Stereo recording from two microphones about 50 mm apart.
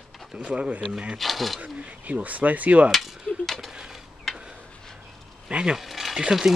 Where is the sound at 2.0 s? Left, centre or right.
Right.